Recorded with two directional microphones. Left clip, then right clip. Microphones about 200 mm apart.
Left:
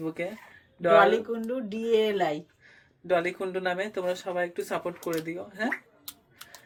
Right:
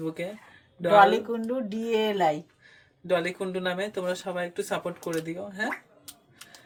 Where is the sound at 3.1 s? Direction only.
Centre (ahead or behind).